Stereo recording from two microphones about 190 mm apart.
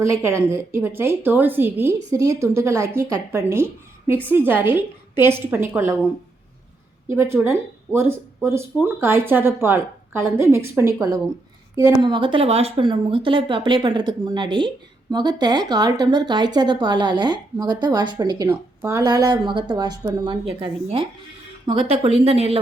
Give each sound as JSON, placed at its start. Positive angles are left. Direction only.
{"t": 0.0, "sound": "a woman's voice", "side_deg": -15}
{"t": 7.1, "sound": "a woman's voice", "side_deg": -15}